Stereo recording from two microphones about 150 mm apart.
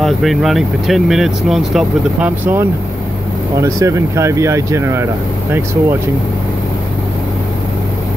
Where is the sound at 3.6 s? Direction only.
20° right (ahead or behind).